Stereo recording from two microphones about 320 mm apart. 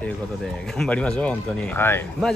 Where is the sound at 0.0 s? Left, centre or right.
Centre.